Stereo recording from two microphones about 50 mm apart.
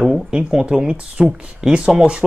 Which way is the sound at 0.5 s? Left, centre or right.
Centre.